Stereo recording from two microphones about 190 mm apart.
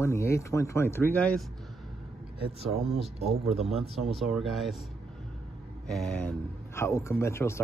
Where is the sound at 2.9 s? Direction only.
35° right (ahead or behind).